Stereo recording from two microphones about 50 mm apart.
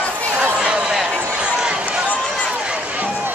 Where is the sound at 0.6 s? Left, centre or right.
Centre.